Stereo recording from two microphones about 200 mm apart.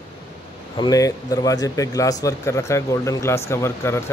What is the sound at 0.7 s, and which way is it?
Speech, 20° left (ahead or behind).